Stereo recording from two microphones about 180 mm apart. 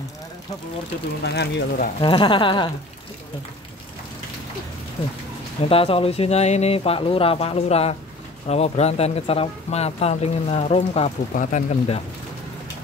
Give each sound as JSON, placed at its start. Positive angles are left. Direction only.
{"t": 1.2, "sound": "speech", "side_deg": 65}
{"t": 2.0, "sound": "speech", "side_deg": 25}
{"t": 5.7, "sound": "speech", "side_deg": 30}